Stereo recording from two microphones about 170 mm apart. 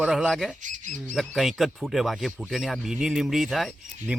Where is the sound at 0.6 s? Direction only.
45° right (ahead or behind).